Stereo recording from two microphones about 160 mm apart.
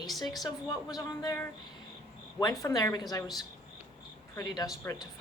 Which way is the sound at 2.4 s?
25° left (ahead or behind).